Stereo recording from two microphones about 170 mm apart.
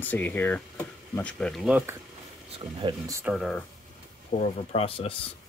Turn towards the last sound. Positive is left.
turn(degrees=35)  # may be behind; listen again after turning